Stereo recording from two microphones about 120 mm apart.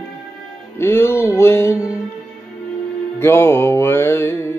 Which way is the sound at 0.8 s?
20° left (ahead or behind).